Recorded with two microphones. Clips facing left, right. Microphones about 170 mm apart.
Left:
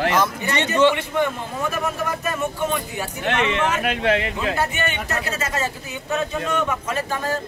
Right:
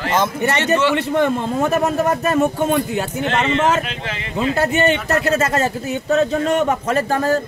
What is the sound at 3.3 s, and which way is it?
Speech, 60° left (ahead or behind).